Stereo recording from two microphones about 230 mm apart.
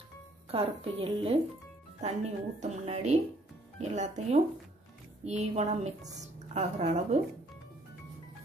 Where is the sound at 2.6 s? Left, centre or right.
Right.